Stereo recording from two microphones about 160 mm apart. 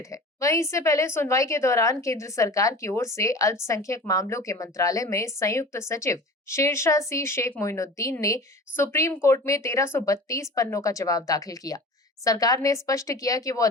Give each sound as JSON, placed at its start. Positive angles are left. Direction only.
{"t": 0.0, "sound": "a woman's voice", "side_deg": 20}